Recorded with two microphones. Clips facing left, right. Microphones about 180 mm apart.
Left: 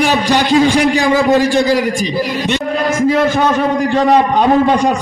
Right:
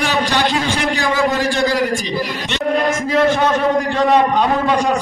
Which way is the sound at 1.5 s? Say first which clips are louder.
Left 4 dB; 20° left (ahead or behind).